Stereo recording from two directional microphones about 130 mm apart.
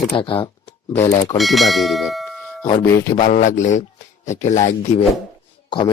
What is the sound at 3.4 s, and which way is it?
Speech, 70° left (ahead or behind).